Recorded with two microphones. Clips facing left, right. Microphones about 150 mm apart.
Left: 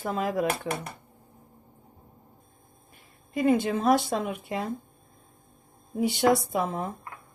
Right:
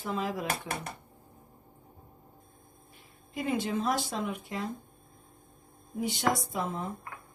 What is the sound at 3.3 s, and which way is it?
A woman's voice, 55° left (ahead or behind).